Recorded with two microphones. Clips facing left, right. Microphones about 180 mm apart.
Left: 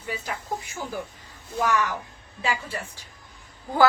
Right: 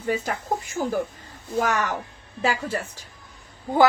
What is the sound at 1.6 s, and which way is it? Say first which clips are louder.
A woman's voice: right 1 dB; 50° right (ahead or behind).